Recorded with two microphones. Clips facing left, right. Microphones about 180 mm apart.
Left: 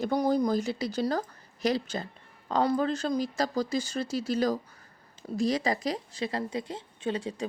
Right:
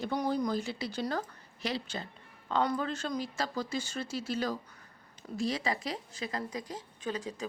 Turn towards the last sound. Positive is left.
turn(degrees=30)  # may be behind; listen again after turning